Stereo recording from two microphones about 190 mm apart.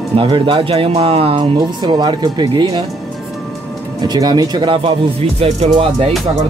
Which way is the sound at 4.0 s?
20° right (ahead or behind).